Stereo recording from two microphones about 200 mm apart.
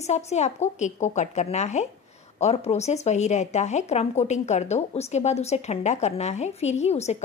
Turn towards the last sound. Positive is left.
turn(degrees=35)  # may be behind; listen again after turning